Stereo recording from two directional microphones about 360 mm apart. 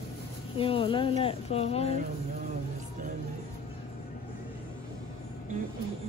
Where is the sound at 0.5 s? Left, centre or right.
Centre.